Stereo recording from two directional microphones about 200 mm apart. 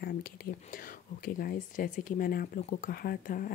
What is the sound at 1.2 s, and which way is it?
Speech, 45° left (ahead or behind).